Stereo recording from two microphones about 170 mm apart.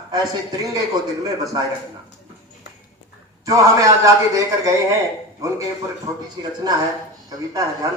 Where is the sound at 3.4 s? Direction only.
20° right (ahead or behind).